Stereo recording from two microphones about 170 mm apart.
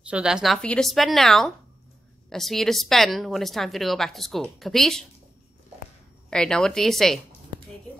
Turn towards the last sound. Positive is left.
turn(degrees=0)  # may be behind; listen again after turning